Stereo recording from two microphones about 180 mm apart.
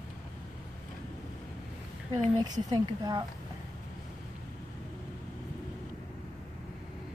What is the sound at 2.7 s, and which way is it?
Speech, 20° right (ahead or behind).